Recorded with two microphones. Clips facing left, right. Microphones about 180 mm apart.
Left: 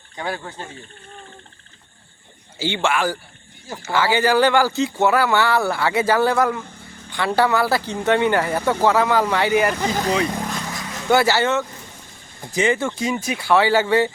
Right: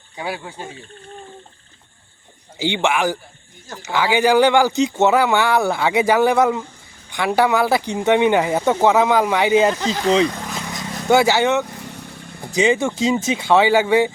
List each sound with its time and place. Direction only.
0.2 s speech: 10° right (ahead or behind)
2.6 s speech: 15° right (ahead or behind)
10.6 s vehicle: 20° right (ahead or behind)
11.9 s vehicle: 70° right (ahead or behind)
12.5 s speech: 15° right (ahead or behind)